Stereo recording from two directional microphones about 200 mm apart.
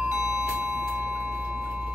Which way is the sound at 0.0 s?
5° right (ahead or behind).